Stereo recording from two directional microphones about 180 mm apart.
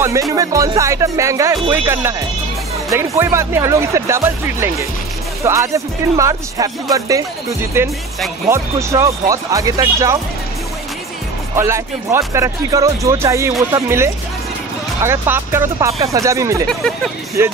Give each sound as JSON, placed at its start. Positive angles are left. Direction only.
{"t": 0.0, "sound": "music", "side_deg": -15}
{"t": 5.4, "sound": "speech", "side_deg": -15}
{"t": 7.8, "sound": "music", "side_deg": -15}
{"t": 11.5, "sound": "music", "side_deg": -15}
{"t": 16.6, "sound": "speech", "side_deg": 5}